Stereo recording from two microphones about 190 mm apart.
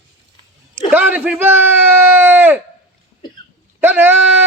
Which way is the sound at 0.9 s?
10° right (ahead or behind).